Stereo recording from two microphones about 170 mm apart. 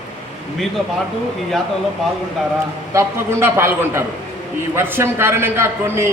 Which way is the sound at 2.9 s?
15° right (ahead or behind).